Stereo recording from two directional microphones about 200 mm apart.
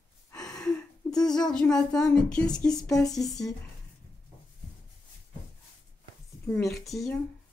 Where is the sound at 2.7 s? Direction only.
20° left (ahead or behind).